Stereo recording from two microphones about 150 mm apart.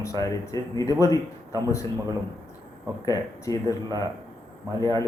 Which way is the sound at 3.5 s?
25° left (ahead or behind).